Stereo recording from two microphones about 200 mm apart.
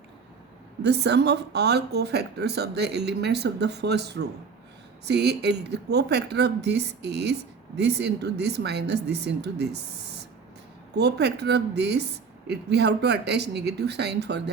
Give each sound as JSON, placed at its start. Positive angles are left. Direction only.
{"t": 0.8, "sound": "a woman's voice", "side_deg": -55}
{"t": 10.9, "sound": "a woman's voice", "side_deg": -55}